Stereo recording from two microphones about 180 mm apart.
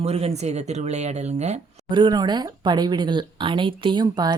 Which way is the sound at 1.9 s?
25° right (ahead or behind).